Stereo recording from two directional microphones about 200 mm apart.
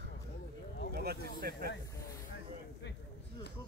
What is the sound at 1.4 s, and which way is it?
Speech, 50° right (ahead or behind).